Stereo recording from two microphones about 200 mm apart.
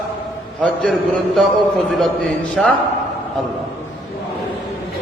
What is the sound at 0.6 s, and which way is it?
A man's voice, centre (ahead or behind).